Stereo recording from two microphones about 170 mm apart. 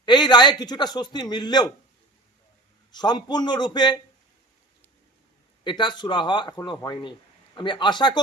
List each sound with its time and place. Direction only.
0.0 s a man's voice: 25° left (ahead or behind)
2.9 s a man's voice: 25° left (ahead or behind)
5.6 s a man's voice: 25° left (ahead or behind)